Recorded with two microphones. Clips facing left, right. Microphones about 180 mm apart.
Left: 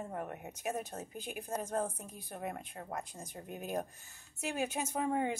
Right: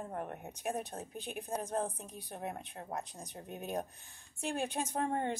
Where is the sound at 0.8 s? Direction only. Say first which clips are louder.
Even; 5° left (ahead or behind).